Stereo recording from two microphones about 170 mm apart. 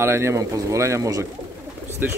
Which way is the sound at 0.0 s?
15° right (ahead or behind).